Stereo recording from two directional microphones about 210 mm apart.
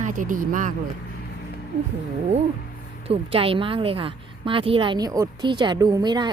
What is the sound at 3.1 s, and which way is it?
A woman's voice, 25° right (ahead or behind).